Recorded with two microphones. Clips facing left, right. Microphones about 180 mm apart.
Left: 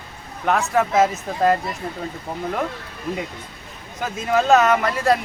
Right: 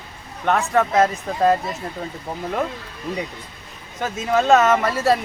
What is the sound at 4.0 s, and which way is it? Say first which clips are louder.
Speech: even; centre (ahead or behind).